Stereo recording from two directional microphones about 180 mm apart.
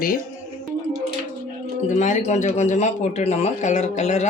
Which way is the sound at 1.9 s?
40° left (ahead or behind).